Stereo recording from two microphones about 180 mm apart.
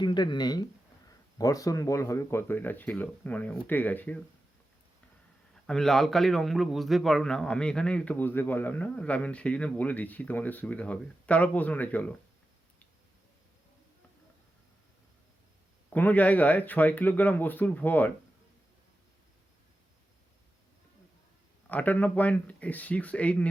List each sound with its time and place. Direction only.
0.0 s a man's voice: 25° left (ahead or behind); by 4.2 s 10° left (ahead or behind)
5.6 s a man's voice: 5° left (ahead or behind)
15.9 s a man's voice: 10° left (ahead or behind)
21.7 s a man's voice: 10° left (ahead or behind)